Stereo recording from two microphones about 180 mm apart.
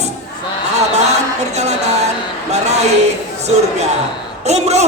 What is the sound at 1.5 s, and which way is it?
Speech, 40° right (ahead or behind).